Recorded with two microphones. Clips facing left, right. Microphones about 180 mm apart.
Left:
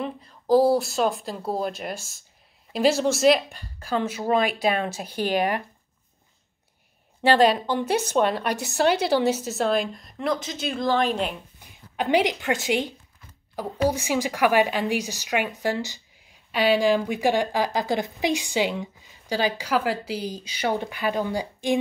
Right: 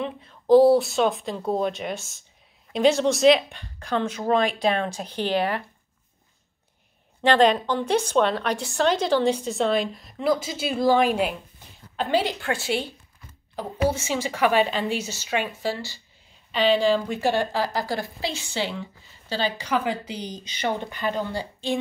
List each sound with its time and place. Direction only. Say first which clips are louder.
0.0 s a woman's voice: right 1 dB; centre (ahead or behind)
7.2 s a woman's voice: even; 10° left (ahead or behind); by 11.3 s 10° right (ahead or behind)
12.0 s speech: left 2 dB; 15° left (ahead or behind)